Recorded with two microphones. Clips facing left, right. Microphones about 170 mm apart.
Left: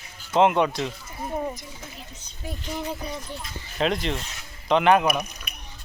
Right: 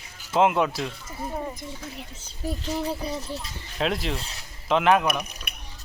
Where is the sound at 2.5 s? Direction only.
35° right (ahead or behind).